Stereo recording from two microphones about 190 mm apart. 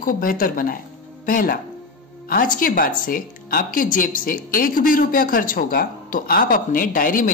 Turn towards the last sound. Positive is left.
turn(degrees=45)  # may be behind; listen again after turning